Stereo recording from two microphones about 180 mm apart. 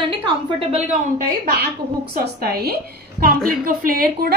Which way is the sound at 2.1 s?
60° right (ahead or behind).